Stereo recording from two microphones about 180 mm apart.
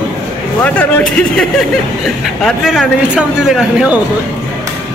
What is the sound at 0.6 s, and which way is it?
Speech, 10° left (ahead or behind).